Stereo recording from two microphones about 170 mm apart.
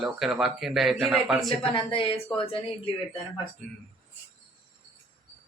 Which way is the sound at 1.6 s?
30° left (ahead or behind).